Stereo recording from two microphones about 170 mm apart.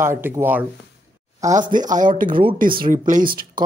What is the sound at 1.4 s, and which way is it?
Speech, 45° right (ahead or behind).